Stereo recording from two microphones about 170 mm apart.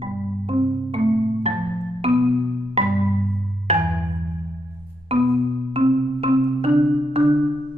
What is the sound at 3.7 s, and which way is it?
Music, 40° right (ahead or behind).